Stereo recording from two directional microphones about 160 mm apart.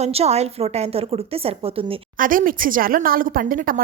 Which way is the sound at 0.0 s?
40° right (ahead or behind).